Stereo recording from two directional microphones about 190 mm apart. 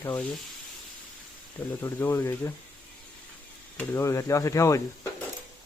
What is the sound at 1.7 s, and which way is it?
Speech, 10° left (ahead or behind).